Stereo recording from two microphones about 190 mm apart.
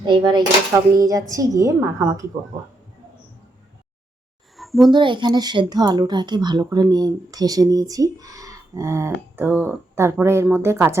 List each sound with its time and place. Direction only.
0.0 s speech: 25° right (ahead or behind)
4.5 s a sound: centre (ahead or behind)
4.9 s speech: 25° right (ahead or behind)